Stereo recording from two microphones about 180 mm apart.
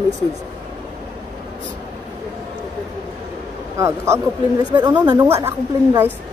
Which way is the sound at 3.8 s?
15° right (ahead or behind).